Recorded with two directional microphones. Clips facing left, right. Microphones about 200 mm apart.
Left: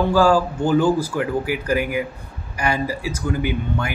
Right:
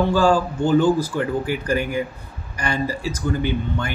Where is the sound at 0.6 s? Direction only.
10° left (ahead or behind).